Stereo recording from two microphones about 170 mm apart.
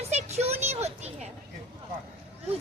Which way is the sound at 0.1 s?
40° right (ahead or behind).